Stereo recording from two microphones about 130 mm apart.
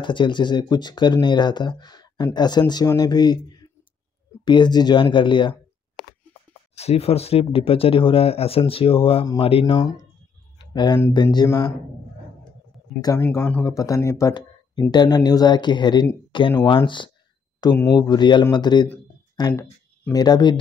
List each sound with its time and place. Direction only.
0.0 s speech: 35° left (ahead or behind)
6.7 s speech: 55° left (ahead or behind)
10.6 s a sound: 35° left (ahead or behind)
11.4 s speech: 25° left (ahead or behind)
13.2 s speech: 20° left (ahead or behind)
14.3 s speech: 35° left (ahead or behind)